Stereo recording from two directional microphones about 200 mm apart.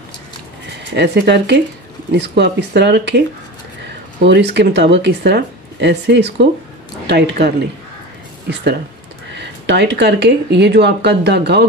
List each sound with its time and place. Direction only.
0.9 s speech: 55° right (ahead or behind)
4.2 s speech: 55° right (ahead or behind)
9.7 s speech: 60° right (ahead or behind)